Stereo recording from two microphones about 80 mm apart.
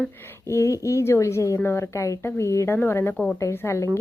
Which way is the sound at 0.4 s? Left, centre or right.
Left.